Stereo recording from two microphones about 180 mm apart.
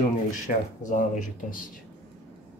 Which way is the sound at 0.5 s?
50° left (ahead or behind).